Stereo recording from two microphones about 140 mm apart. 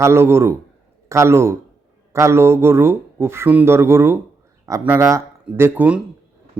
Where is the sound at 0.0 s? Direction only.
20° right (ahead or behind).